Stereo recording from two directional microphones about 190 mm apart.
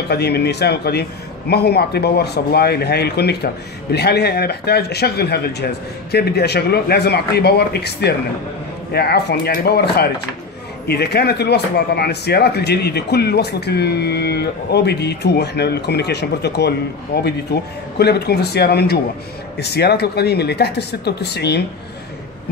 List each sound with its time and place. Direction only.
0.1 s speech: 60° left (ahead or behind)